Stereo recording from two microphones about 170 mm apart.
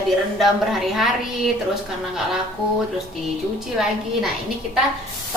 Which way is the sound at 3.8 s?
5° right (ahead or behind).